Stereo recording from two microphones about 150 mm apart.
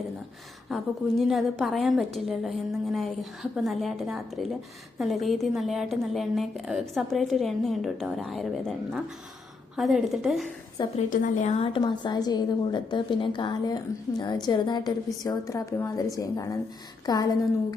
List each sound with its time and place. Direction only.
0.7 s a woman's voice: centre (ahead or behind)
10.8 s a woman's voice: 30° left (ahead or behind)
11.1 s a woman's voice: 60° left (ahead or behind); by 17.2 s 25° left (ahead or behind)